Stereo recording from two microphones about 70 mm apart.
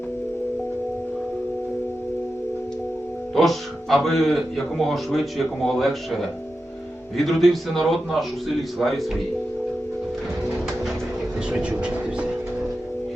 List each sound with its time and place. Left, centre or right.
3.3 s speech: centre
7.2 s speech: centre
11.5 s speech: centre